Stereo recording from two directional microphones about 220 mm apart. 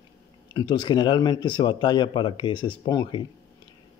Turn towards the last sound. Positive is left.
turn(degrees=20)  # may be behind; listen again after turning